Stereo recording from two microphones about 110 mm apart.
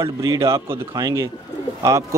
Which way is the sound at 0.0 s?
30° right (ahead or behind).